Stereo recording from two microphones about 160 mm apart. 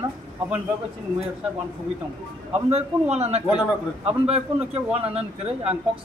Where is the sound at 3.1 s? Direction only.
40° right (ahead or behind).